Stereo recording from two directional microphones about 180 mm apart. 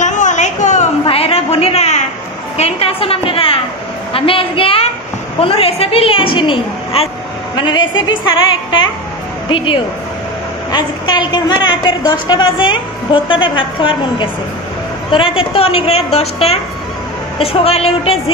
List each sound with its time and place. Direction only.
0.0 s a sound: 40° left (ahead or behind)
5.4 s a woman's voice: 30° left (ahead or behind)
10.7 s a woman's voice: 25° left (ahead or behind)